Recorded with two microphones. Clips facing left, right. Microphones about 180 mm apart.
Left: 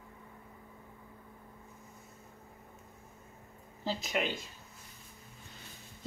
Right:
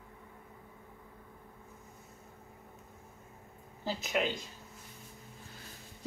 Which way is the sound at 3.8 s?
5° right (ahead or behind).